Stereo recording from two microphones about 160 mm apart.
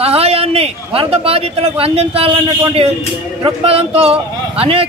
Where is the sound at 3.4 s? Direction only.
35° right (ahead or behind).